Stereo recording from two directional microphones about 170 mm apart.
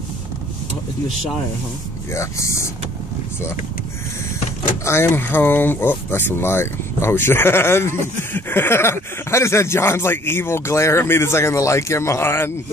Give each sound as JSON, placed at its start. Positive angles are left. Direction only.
{"t": 2.1, "sound": "speech", "side_deg": 15}
{"t": 4.8, "sound": "speech", "side_deg": 15}